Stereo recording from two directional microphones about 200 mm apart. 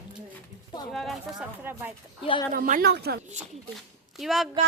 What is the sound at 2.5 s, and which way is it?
Speech, 45° right (ahead or behind).